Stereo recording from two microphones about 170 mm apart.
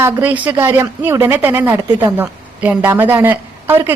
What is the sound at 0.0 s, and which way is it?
A woman's voice, 10° right (ahead or behind).